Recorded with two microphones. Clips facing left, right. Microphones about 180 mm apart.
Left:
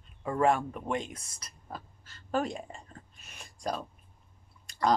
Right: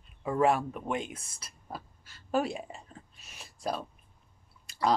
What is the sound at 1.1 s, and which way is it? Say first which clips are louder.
Speech: right 1 dB; 30° right (ahead or behind).